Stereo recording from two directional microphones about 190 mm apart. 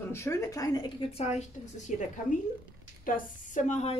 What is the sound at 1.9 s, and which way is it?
Speech, 40° left (ahead or behind).